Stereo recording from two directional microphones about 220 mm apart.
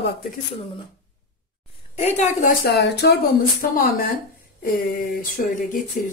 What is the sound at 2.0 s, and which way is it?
A woman's voice, 30° left (ahead or behind).